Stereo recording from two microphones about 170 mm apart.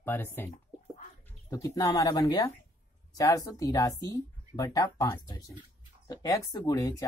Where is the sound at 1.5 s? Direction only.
20° left (ahead or behind).